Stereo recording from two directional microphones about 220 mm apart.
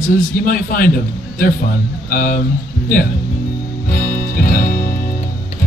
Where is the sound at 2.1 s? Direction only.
40° left (ahead or behind).